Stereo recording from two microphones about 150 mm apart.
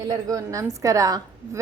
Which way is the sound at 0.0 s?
25° right (ahead or behind).